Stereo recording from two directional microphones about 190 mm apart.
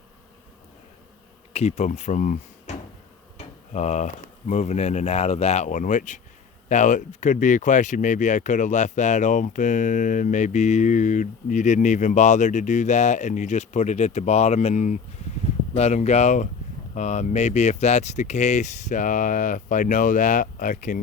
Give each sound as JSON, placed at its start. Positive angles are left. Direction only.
{"t": 1.5, "sound": "speech", "side_deg": 35}